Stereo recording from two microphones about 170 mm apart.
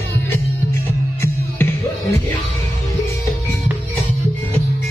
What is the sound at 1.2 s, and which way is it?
Music, 15° left (ahead or behind).